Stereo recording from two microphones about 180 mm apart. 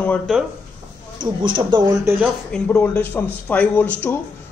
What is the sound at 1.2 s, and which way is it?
Speech, 25° right (ahead or behind).